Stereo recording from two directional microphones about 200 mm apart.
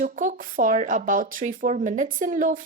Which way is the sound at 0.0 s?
45° right (ahead or behind).